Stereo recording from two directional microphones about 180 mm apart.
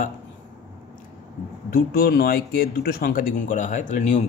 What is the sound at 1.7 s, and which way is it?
Speech, 55° left (ahead or behind).